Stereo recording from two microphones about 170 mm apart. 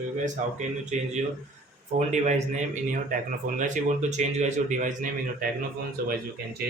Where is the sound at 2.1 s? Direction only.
45° right (ahead or behind).